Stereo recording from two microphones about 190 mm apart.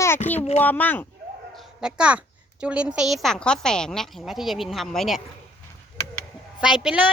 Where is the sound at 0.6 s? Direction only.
10° left (ahead or behind).